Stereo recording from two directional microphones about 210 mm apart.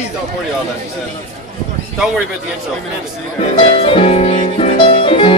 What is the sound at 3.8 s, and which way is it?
Music, 25° left (ahead or behind).